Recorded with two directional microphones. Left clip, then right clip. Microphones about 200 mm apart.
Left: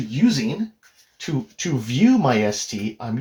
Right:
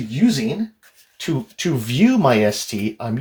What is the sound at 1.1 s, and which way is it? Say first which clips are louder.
Speech: right 4 dB; 45° right (ahead or behind).